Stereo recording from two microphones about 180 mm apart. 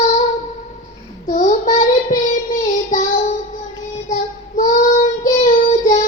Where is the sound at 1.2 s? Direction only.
45° left (ahead or behind).